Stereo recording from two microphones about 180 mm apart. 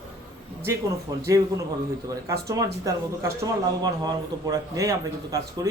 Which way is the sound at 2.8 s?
20° right (ahead or behind).